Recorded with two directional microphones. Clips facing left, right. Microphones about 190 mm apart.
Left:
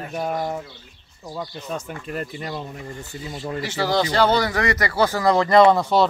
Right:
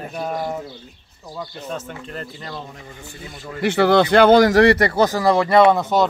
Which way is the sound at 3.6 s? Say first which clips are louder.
Right 8 dB; 60° right (ahead or behind).